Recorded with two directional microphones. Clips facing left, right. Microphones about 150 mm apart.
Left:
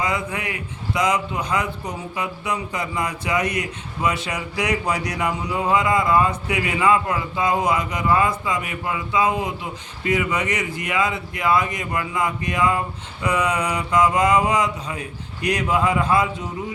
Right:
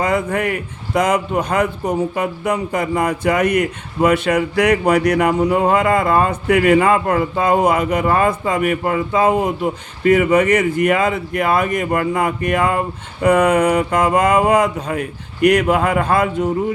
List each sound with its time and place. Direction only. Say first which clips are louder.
0.0 s a man's voice: right 7 dB; 55° right (ahead or behind)